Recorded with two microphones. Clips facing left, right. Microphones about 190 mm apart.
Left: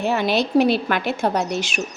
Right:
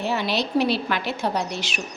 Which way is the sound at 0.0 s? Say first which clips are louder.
Left 4 dB; 50° left (ahead or behind).